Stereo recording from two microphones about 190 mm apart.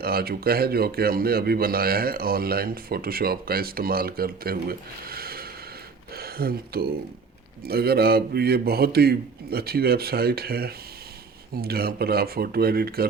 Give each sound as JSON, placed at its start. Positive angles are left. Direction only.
{"t": 0.0, "sound": "a man's voice", "side_deg": -55}